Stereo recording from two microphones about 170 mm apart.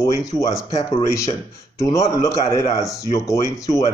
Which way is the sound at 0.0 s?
20° left (ahead or behind).